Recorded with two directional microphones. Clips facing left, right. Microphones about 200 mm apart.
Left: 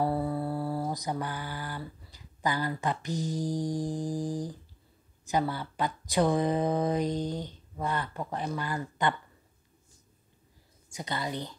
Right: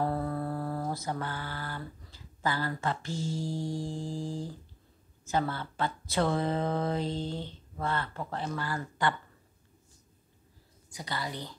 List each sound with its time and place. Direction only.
0.0 s mantra: 10° left (ahead or behind)
5.2 s a woman's voice: 15° left (ahead or behind)
10.9 s a woman's voice: 20° left (ahead or behind)